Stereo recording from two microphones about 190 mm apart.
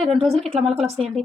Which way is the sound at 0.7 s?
Centre (ahead or behind).